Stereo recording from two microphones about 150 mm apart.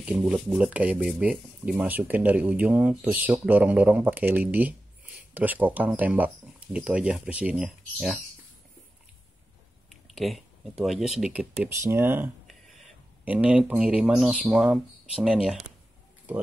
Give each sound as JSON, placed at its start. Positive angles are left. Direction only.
{"t": 0.0, "sound": "speech", "side_deg": -10}
{"t": 9.8, "sound": "speech", "side_deg": 0}
{"t": 11.7, "sound": "speech", "side_deg": -20}
{"t": 12.4, "sound": "a sound", "side_deg": 0}
{"t": 13.2, "sound": "speech", "side_deg": -10}